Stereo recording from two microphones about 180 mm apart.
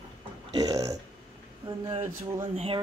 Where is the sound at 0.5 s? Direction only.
20° right (ahead or behind).